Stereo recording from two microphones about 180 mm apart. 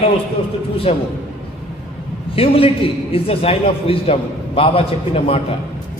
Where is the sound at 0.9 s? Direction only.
35° left (ahead or behind).